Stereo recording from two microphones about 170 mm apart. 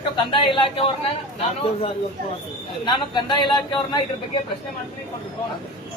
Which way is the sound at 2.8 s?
25° left (ahead or behind).